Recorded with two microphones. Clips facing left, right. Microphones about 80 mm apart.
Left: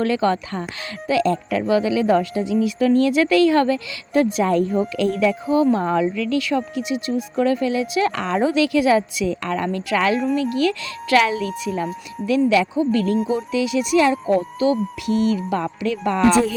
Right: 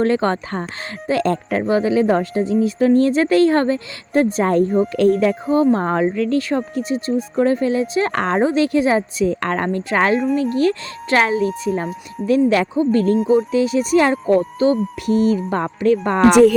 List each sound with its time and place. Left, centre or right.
0.0 s speech: right
16.3 s a woman's voice: right